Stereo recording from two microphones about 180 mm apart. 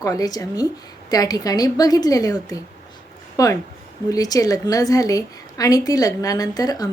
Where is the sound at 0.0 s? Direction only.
20° left (ahead or behind).